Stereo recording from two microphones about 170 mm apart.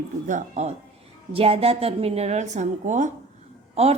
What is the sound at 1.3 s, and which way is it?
A woman's voice, 35° right (ahead or behind).